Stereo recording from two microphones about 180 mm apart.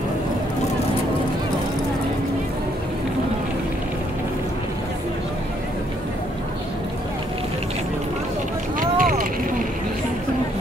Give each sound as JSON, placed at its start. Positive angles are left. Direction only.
{"t": 8.7, "sound": "vehicle", "side_deg": -50}